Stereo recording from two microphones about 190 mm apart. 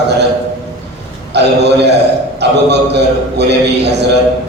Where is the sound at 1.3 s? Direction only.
65° right (ahead or behind).